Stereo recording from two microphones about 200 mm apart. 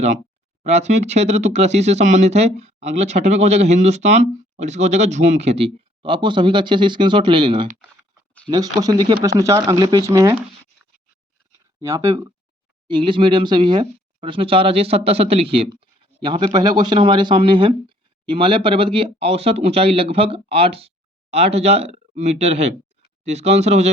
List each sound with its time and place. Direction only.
0.6 s speech: 35° right (ahead or behind); by 10.3 s 15° right (ahead or behind)
11.8 s speech: 15° right (ahead or behind); by 23.9 s 35° right (ahead or behind)